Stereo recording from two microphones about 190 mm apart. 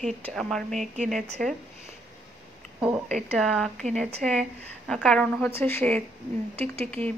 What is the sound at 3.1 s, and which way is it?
Speech, 35° right (ahead or behind).